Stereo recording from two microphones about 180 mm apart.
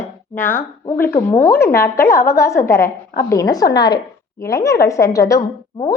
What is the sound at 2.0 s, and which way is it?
A woman's voice, 15° left (ahead or behind).